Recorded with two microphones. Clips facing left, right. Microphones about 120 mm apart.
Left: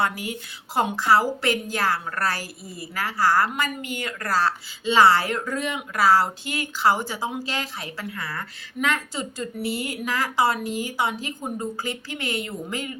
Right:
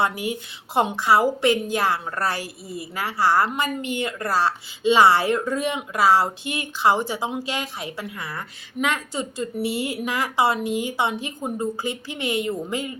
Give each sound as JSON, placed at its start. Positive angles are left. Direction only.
{"t": 0.0, "sound": "a woman's voice", "side_deg": -20}